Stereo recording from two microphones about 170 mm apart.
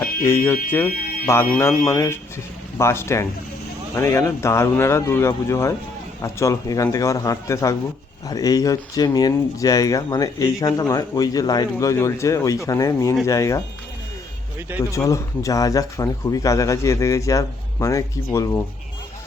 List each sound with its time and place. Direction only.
0.0 s speech: 15° left (ahead or behind)
14.9 s speech: 20° left (ahead or behind)